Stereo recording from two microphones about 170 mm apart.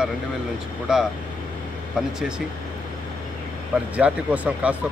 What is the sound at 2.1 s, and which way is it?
Speech, 5° right (ahead or behind).